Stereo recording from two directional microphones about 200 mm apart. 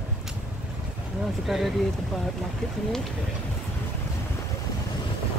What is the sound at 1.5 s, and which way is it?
Speech, centre (ahead or behind).